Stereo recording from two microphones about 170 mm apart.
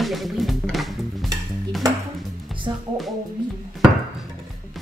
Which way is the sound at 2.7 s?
30° right (ahead or behind).